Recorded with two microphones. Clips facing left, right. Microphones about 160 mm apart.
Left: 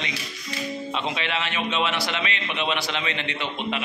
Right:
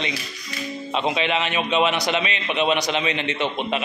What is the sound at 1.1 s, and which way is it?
A man's voice, 20° right (ahead or behind).